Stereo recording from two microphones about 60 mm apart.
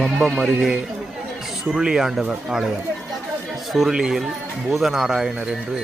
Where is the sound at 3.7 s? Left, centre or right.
Centre.